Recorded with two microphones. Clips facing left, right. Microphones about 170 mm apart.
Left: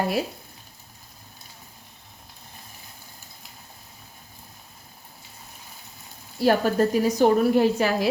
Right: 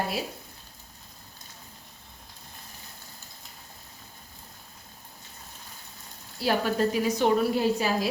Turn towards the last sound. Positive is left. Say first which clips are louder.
# left 5 dB
turn(degrees=60)  # may be behind; listen again after turning